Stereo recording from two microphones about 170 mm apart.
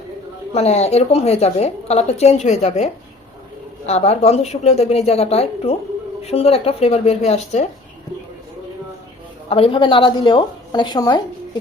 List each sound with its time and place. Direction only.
0.5 s a woman's voice: 40° left (ahead or behind)
9.5 s a woman's voice: 35° left (ahead or behind)